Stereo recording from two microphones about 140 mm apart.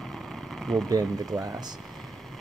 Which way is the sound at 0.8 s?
25° right (ahead or behind).